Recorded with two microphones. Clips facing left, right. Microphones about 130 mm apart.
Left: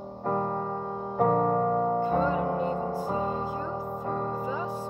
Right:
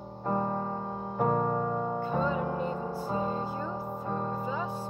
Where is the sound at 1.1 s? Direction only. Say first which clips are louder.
Left 4 dB; 55° left (ahead or behind).